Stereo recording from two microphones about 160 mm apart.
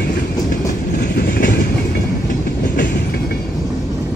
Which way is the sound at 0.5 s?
70° left (ahead or behind).